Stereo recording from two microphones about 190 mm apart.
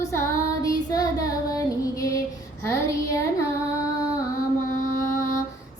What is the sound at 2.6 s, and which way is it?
Child singing, 15° left (ahead or behind).